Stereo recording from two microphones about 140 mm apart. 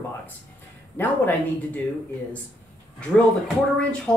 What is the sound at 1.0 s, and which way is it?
Speech, 10° left (ahead or behind).